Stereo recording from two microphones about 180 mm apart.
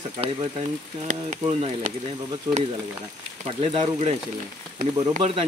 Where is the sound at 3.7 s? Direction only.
35° right (ahead or behind).